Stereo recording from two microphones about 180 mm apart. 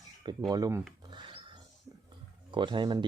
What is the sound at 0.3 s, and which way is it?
Speech, 20° right (ahead or behind).